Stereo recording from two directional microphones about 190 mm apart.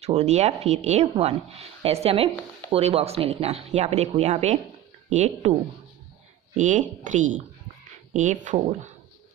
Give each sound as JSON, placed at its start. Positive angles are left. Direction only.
{"t": 0.0, "sound": "a woman's voice", "side_deg": -35}
{"t": 6.5, "sound": "a woman's voice", "side_deg": -40}